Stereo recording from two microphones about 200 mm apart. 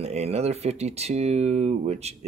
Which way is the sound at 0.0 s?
30° right (ahead or behind).